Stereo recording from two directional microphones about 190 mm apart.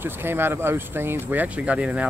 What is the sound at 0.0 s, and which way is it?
Speech, 10° right (ahead or behind).